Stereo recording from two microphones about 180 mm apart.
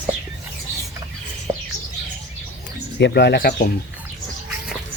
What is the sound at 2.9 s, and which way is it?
Speech, 65° left (ahead or behind).